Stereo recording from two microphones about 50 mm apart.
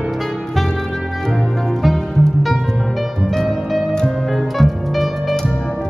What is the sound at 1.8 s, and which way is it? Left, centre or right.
Music, centre.